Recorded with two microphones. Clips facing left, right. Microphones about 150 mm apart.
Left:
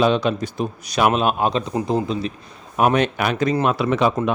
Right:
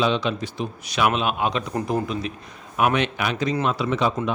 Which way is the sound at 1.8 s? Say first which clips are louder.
Left 3 dB; 30° left (ahead or behind).